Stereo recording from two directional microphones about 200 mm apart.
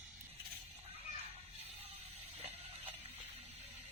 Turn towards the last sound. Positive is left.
turn(degrees=-30)  # may be behind; listen again after turning